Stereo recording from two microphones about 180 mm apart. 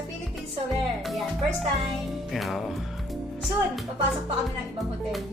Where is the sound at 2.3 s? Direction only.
Centre (ahead or behind).